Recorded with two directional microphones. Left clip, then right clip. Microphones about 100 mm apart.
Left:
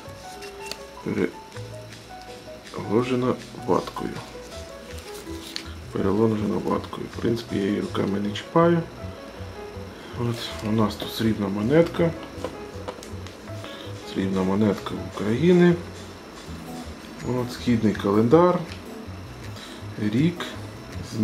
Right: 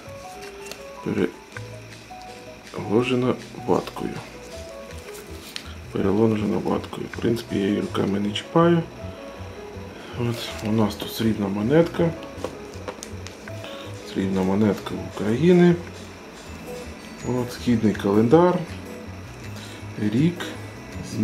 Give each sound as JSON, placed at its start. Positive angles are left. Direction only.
{"t": 2.7, "sound": "speech", "side_deg": -25}
{"t": 5.5, "sound": "speech", "side_deg": -25}
{"t": 10.1, "sound": "speech", "side_deg": -20}
{"t": 14.1, "sound": "speech", "side_deg": -20}
{"t": 17.3, "sound": "speech", "side_deg": -5}
{"t": 17.6, "sound": "speech", "side_deg": -20}
{"t": 20.0, "sound": "speech", "side_deg": -20}